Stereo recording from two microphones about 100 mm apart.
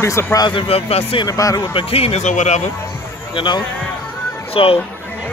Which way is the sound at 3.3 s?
50° left (ahead or behind).